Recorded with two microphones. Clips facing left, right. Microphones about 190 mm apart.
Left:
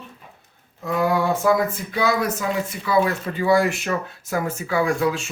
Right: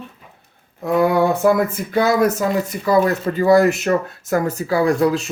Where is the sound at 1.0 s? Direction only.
55° right (ahead or behind); by 5.3 s 35° right (ahead or behind).